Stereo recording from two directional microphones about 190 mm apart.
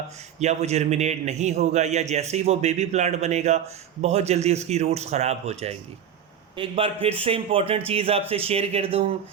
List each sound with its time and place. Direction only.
0.3 s a man's voice: 35° right (ahead or behind)